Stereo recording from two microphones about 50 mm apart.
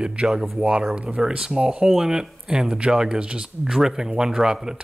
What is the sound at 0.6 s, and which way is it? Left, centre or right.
Speech, right.